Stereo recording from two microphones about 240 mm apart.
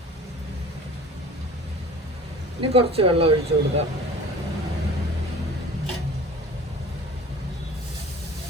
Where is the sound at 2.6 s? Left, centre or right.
Right.